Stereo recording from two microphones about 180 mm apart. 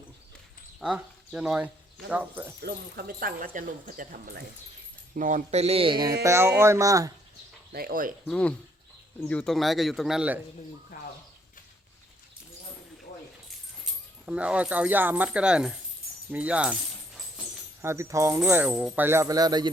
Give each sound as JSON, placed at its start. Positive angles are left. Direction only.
{"t": 0.8, "sound": "speech", "side_deg": -5}
{"t": 2.6, "sound": "a man's voice", "side_deg": -65}
{"t": 6.2, "sound": "speech", "side_deg": -15}
{"t": 7.7, "sound": "speech", "side_deg": -55}
{"t": 8.3, "sound": "speech", "side_deg": 5}
{"t": 14.3, "sound": "speech", "side_deg": -5}
{"t": 17.8, "sound": "speech", "side_deg": -15}